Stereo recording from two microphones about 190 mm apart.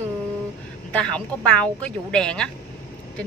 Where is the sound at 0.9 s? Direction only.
5° left (ahead or behind).